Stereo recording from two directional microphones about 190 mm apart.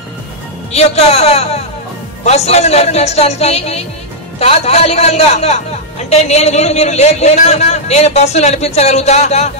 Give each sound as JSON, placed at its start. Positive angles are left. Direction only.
{"t": 0.7, "sound": "a man's voice", "side_deg": 35}